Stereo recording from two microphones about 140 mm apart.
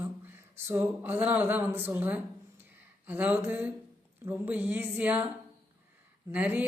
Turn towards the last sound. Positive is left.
turn(degrees=-10)  # may be behind; listen again after turning